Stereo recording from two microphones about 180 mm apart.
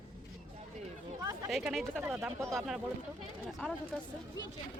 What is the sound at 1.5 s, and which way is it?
Speech, centre (ahead or behind).